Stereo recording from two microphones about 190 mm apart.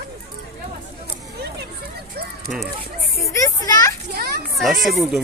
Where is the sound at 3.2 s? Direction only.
15° left (ahead or behind).